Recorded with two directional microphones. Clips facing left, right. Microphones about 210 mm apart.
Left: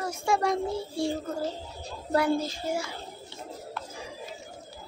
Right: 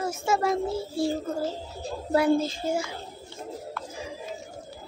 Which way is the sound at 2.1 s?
25° right (ahead or behind).